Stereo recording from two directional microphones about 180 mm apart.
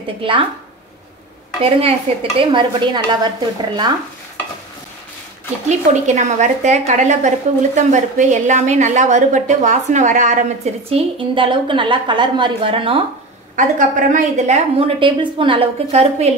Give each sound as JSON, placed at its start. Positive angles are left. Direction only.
{"t": 0.2, "sound": "speech", "side_deg": -30}
{"t": 1.6, "sound": "speech", "side_deg": -30}
{"t": 5.7, "sound": "a woman's voice", "side_deg": -40}
{"t": 13.6, "sound": "a woman's voice", "side_deg": -45}